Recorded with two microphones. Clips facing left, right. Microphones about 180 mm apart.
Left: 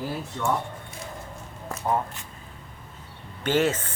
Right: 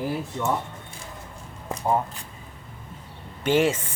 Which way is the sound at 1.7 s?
15° right (ahead or behind).